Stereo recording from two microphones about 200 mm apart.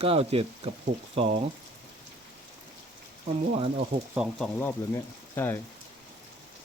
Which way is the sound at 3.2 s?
30° right (ahead or behind).